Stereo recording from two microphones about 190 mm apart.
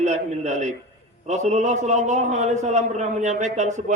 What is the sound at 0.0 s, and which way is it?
A man's voice, 40° right (ahead or behind).